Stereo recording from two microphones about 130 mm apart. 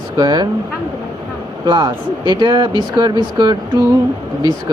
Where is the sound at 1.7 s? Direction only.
35° right (ahead or behind).